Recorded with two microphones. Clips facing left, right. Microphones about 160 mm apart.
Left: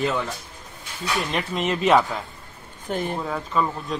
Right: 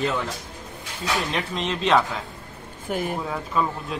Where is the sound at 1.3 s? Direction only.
5° left (ahead or behind).